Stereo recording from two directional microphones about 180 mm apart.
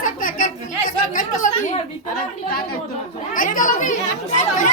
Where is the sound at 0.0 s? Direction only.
50° left (ahead or behind).